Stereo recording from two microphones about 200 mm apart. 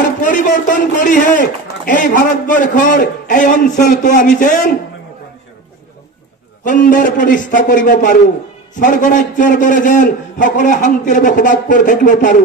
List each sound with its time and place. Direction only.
0.2 s a man's voice: 40° left (ahead or behind)
6.6 s a man's voice: 40° left (ahead or behind)